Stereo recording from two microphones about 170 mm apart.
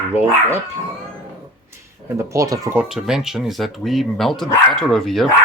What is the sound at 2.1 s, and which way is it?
Speech, 20° right (ahead or behind).